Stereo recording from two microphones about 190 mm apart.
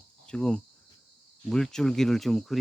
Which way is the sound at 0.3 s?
5° left (ahead or behind).